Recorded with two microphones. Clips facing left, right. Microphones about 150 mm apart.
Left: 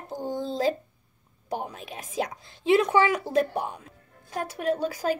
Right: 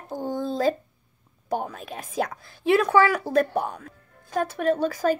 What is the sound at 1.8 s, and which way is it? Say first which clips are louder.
Speech: right 2 dB; 50° right (ahead or behind).